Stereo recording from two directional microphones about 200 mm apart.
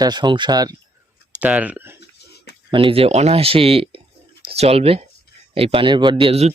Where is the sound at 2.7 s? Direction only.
25° right (ahead or behind).